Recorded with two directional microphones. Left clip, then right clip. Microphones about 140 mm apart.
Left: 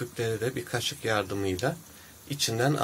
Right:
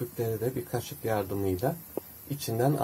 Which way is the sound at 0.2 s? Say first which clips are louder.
Left 1 dB; 5° right (ahead or behind).